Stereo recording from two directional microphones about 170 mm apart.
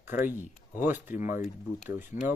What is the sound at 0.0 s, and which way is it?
Speech, 10° right (ahead or behind).